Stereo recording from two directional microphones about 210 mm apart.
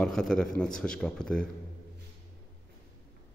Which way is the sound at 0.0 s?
5° left (ahead or behind).